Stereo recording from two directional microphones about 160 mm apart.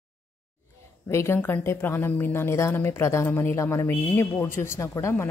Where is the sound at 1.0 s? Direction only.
15° left (ahead or behind).